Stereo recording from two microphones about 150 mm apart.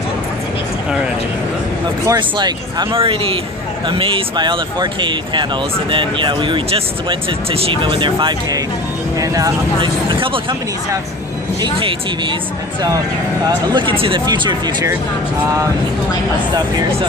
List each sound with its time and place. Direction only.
2.0 s speech: 30° right (ahead or behind)
9.8 s speech: 35° right (ahead or behind)
11.6 s speech: 30° right (ahead or behind)
13.7 s speech: 35° right (ahead or behind)